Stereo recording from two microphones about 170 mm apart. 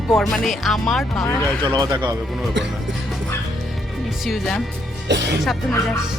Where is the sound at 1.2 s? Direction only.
15° left (ahead or behind).